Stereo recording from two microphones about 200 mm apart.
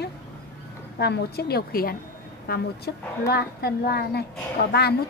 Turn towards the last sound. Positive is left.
turn(degrees=55)  # may be behind; listen again after turning